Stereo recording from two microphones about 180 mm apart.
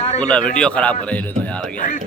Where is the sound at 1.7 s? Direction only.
45° left (ahead or behind).